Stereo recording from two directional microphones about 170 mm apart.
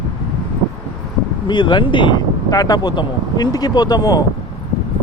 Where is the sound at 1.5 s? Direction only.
25° left (ahead or behind).